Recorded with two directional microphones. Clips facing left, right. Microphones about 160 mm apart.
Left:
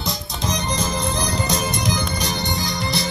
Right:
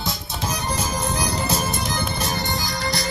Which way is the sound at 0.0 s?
5° right (ahead or behind).